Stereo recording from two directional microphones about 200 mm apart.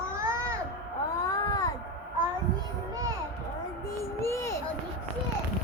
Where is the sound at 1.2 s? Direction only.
15° left (ahead or behind).